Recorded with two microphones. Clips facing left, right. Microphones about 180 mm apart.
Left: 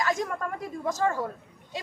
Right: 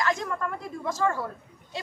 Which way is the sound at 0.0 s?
15° left (ahead or behind).